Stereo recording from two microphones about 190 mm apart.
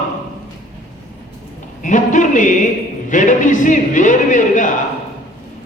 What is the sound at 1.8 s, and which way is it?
A man's voice, 40° left (ahead or behind).